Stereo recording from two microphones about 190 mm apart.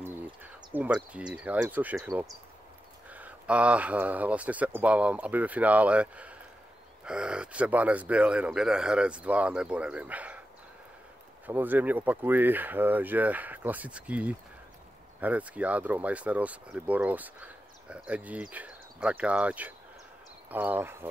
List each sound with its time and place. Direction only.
0.0 s a sound: 10° right (ahead or behind)
0.7 s speech: 5° right (ahead or behind)
11.4 s speech: 10° right (ahead or behind)